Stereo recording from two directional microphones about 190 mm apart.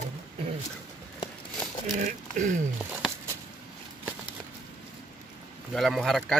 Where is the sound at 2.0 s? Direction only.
40° right (ahead or behind).